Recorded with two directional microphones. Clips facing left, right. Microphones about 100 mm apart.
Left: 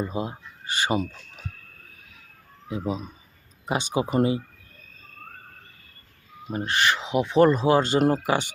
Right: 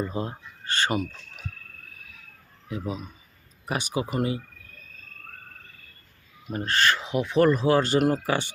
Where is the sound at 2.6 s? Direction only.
25° left (ahead or behind).